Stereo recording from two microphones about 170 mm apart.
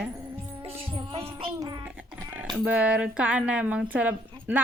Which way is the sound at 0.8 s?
30° right (ahead or behind).